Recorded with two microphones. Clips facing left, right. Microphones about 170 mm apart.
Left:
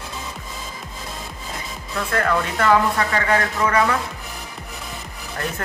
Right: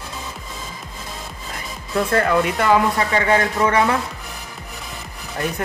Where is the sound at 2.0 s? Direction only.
30° right (ahead or behind).